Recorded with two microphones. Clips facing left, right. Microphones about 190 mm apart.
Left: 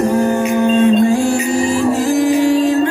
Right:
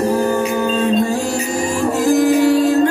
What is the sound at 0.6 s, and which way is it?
Music, 35° right (ahead or behind).